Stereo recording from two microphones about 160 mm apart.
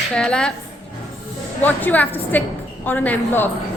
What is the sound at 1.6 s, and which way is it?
A woman's voice, 10° left (ahead or behind).